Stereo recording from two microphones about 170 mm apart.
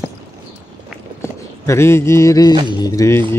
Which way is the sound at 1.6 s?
15° left (ahead or behind).